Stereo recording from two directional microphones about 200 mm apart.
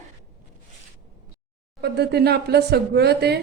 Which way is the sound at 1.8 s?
55° right (ahead or behind).